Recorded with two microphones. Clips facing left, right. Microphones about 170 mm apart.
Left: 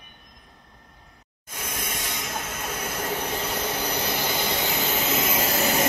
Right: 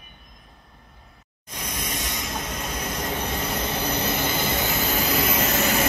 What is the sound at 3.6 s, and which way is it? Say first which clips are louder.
Vehicle: right 2 dB; 10° left (ahead or behind).